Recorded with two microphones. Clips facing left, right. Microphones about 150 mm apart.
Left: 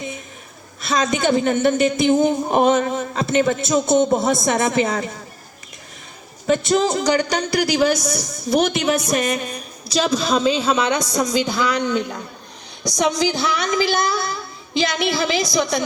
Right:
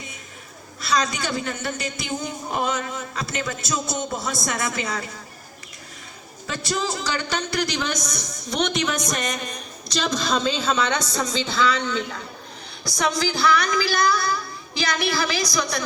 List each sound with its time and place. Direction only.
0.8 s a woman's voice: 25° left (ahead or behind)
3.9 s speech: 50° left (ahead or behind)
4.4 s a woman's voice: 25° left (ahead or behind)
6.5 s a woman's voice: 20° left (ahead or behind)